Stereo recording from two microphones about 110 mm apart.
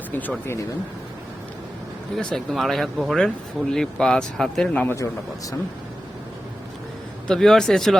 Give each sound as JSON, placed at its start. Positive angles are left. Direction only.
{"t": 0.1, "sound": "speech", "side_deg": 15}
{"t": 2.1, "sound": "speech", "side_deg": 0}
{"t": 7.3, "sound": "speech", "side_deg": 5}